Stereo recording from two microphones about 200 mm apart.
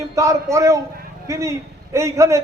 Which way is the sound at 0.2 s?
15° right (ahead or behind).